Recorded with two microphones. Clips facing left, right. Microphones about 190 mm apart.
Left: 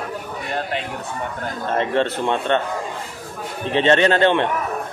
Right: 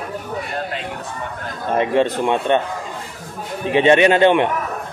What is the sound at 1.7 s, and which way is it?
Speech, 15° right (ahead or behind).